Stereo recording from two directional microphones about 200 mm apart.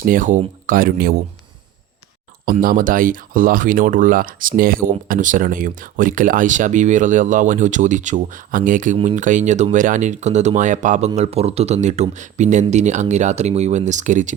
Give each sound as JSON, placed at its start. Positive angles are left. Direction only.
{"t": 0.0, "sound": "speech", "side_deg": -45}
{"t": 2.4, "sound": "speech", "side_deg": -45}